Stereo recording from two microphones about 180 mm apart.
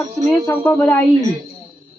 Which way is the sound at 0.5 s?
15° left (ahead or behind).